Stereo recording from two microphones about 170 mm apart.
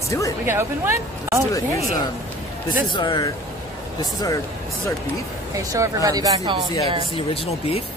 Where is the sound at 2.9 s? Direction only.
25° left (ahead or behind).